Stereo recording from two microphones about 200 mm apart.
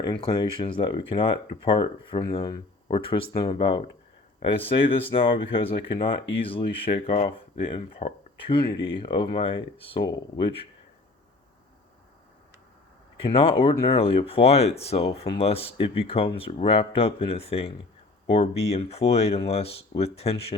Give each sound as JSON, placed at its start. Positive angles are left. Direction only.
{"t": 0.0, "sound": "speech", "side_deg": 25}
{"t": 13.2, "sound": "speech", "side_deg": 25}